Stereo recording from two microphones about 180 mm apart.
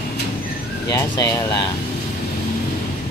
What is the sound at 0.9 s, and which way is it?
Speech, 20° left (ahead or behind).